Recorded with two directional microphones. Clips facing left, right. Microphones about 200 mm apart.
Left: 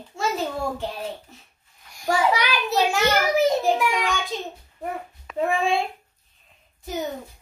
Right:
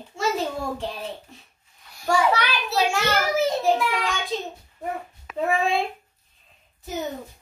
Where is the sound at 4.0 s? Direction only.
Centre (ahead or behind).